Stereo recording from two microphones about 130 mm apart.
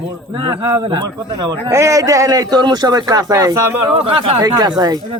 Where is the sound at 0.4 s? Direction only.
40° right (ahead or behind).